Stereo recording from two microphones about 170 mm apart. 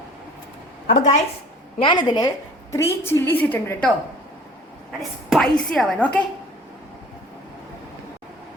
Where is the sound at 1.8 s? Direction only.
25° left (ahead or behind); by 3.9 s 10° left (ahead or behind).